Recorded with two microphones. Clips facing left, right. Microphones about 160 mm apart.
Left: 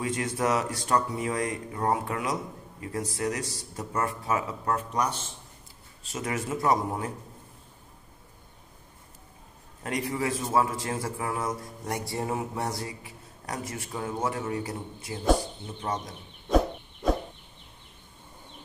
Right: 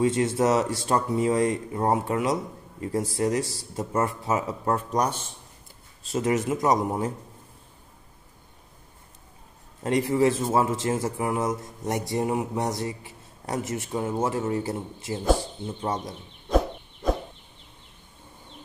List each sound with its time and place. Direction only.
0.0 s a man's voice: 25° right (ahead or behind)
4.9 s a man's voice: 40° right (ahead or behind)
6.3 s a man's voice: 20° right (ahead or behind)
9.8 s a man's voice: 25° right (ahead or behind)
16.4 s a sound: centre (ahead or behind)